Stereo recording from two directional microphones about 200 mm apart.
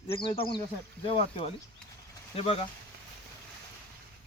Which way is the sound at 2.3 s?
30° left (ahead or behind).